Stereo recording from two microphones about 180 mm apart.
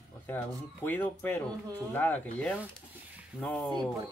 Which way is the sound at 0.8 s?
10° left (ahead or behind).